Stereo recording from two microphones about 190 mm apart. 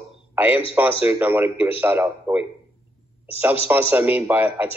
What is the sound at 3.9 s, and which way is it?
Speech, 10° right (ahead or behind).